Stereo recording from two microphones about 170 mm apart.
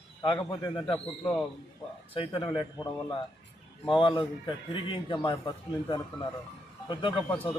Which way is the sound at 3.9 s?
30° left (ahead or behind).